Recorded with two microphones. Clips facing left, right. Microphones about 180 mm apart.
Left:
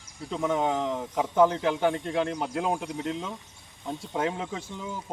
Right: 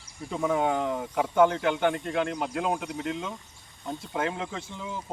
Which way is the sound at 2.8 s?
35° left (ahead or behind).